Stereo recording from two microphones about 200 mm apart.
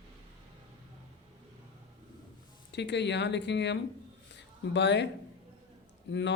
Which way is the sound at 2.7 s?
60° left (ahead or behind).